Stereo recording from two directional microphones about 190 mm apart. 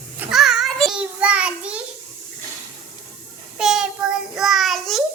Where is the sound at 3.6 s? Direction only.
5° right (ahead or behind).